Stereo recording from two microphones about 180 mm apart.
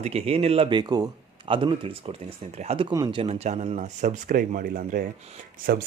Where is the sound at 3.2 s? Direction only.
35° right (ahead or behind).